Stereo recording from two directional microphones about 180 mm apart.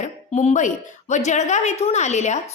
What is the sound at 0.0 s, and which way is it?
A woman's voice, 40° left (ahead or behind).